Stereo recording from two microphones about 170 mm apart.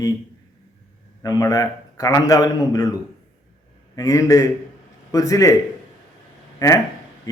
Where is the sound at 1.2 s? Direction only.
20° left (ahead or behind).